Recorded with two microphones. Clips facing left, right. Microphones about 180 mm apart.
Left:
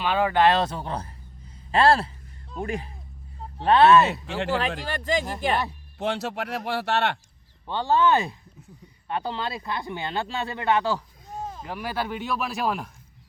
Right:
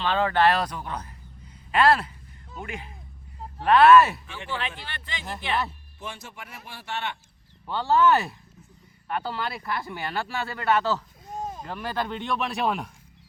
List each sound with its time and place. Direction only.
0.0 s speech: 10° left (ahead or behind)
4.3 s speech: 75° left (ahead or behind)
4.8 s speech: 40° left (ahead or behind)
6.0 s speech: 75° left (ahead or behind)
7.7 s speech: 20° left (ahead or behind); by 12.9 s centre (ahead or behind)